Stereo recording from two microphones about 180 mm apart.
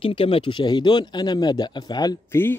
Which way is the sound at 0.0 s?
30° left (ahead or behind).